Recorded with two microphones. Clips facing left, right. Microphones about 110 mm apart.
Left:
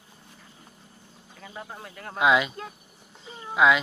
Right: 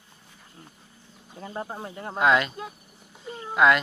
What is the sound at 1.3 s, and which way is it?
Speech, 35° right (ahead or behind).